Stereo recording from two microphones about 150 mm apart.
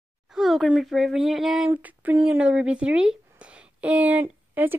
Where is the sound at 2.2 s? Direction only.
5° right (ahead or behind).